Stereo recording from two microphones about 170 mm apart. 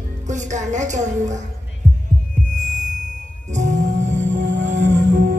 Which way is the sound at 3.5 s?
45° right (ahead or behind).